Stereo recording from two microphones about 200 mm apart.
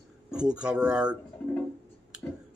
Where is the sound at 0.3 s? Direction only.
5° right (ahead or behind).